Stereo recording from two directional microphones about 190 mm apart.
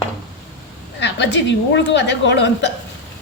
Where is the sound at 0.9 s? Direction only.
65° left (ahead or behind).